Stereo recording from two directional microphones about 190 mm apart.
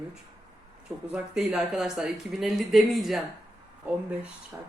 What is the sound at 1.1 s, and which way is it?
Speech, 5° right (ahead or behind).